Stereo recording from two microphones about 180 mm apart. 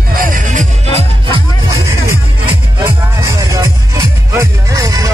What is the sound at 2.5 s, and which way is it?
Music, 20° right (ahead or behind).